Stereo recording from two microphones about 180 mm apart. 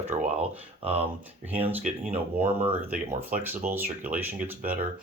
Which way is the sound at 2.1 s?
10° right (ahead or behind).